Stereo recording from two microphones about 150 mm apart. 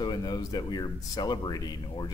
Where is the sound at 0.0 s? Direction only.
30° left (ahead or behind).